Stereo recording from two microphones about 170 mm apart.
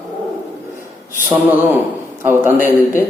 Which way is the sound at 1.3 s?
10° right (ahead or behind).